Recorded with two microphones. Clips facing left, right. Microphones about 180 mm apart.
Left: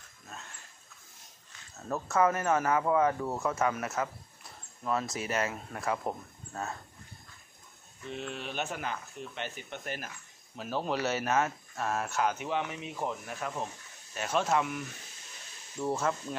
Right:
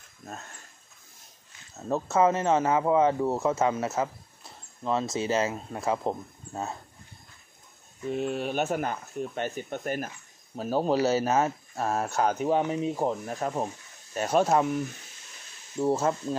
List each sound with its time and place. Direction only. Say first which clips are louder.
1.9 s speech: right 4 dB; 25° right (ahead or behind)
8.1 s speech: right 9 dB; 45° right (ahead or behind); by 16.3 s 30° right (ahead or behind)